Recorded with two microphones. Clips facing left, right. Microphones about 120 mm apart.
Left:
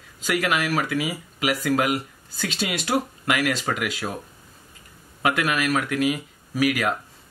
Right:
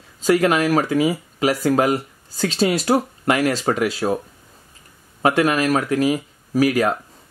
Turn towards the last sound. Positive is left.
turn(degrees=-35)  # may be behind; listen again after turning